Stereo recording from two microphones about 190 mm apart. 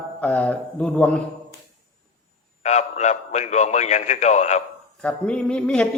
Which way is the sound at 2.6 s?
40° left (ahead or behind).